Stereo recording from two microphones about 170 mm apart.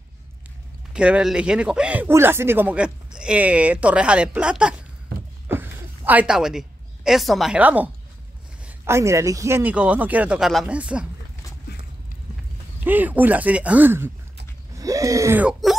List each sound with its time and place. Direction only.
0.9 s speech: 5° right (ahead or behind)
5.5 s a sound: 10° right (ahead or behind)
7.1 s speech: centre (ahead or behind)
12.8 s speech: 10° right (ahead or behind)